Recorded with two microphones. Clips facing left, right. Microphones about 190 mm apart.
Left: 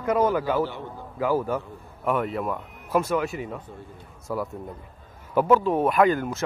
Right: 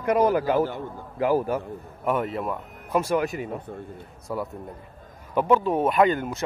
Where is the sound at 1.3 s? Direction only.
15° right (ahead or behind).